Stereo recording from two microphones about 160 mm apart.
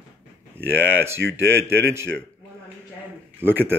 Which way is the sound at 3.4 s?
15° right (ahead or behind).